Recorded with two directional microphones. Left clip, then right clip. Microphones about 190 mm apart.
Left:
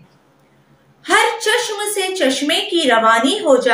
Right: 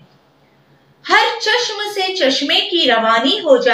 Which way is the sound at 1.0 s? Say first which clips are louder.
Right 1 dB; 25° left (ahead or behind).